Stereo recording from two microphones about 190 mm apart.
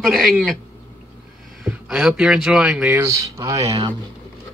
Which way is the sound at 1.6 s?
Centre (ahead or behind).